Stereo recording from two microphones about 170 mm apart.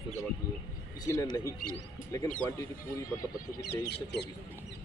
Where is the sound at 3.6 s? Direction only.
80° left.